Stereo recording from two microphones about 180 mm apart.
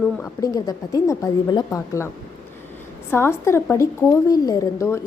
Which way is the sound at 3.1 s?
15° left (ahead or behind).